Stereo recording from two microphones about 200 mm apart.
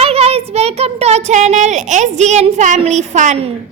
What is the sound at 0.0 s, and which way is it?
A child's voice, 30° right (ahead or behind).